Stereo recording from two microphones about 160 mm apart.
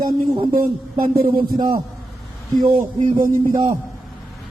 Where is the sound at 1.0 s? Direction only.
65° right (ahead or behind).